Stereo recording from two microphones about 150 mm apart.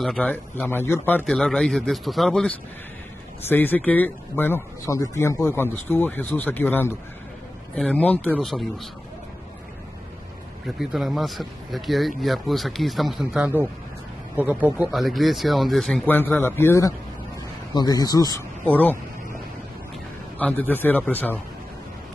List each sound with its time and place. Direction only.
0.0 s speech: 5° left (ahead or behind)
3.4 s speech: 15° left (ahead or behind)
10.8 s speech: centre (ahead or behind)
16.1 s speech: 10° left (ahead or behind)
18.7 s speech: 10° left (ahead or behind)
20.3 s speech: 10° left (ahead or behind)